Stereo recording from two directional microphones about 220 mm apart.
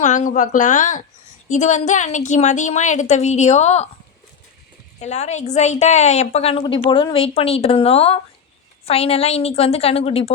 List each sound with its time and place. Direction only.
0.0 s a woman's voice: 35° left (ahead or behind)
4.9 s a woman's voice: 30° left (ahead or behind)